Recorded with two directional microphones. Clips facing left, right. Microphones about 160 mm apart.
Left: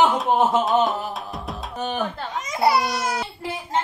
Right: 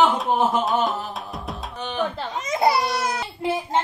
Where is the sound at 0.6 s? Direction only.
Centre (ahead or behind).